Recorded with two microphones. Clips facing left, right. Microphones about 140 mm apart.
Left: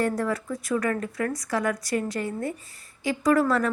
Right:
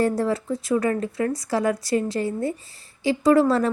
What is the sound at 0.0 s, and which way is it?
A woman's voice, 30° right (ahead or behind).